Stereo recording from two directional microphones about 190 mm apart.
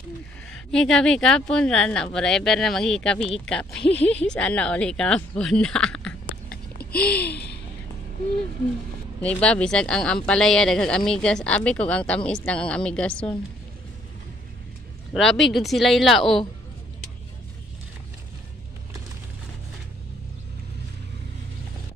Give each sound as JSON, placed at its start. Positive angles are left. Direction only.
{"t": 0.5, "sound": "speech", "side_deg": 5}
{"t": 6.5, "sound": "a sound", "side_deg": 55}
{"t": 9.2, "sound": "speech", "side_deg": 5}
{"t": 15.1, "sound": "speech", "side_deg": 0}